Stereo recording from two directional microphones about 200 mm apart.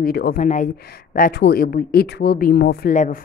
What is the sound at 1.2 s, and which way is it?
Speech, 50° left (ahead or behind).